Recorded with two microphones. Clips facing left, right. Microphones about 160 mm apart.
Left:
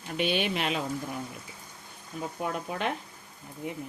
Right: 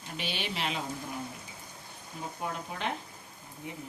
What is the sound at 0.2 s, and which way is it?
Speech, 55° left (ahead or behind).